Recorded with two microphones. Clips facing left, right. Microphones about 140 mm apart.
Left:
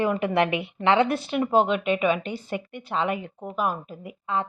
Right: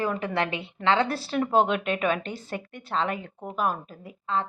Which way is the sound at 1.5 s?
5° left (ahead or behind).